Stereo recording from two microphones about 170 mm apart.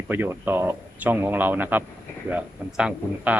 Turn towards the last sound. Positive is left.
turn(degrees=-5)  # may be behind; listen again after turning